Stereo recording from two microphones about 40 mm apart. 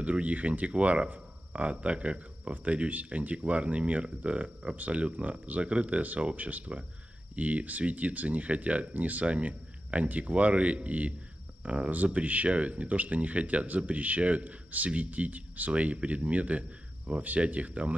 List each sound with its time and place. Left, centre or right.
0.0 s a man's voice: right
15.7 s a man's voice: right